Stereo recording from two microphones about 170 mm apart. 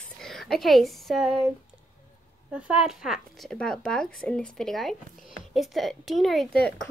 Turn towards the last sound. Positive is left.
turn(degrees=0)  # may be behind; listen again after turning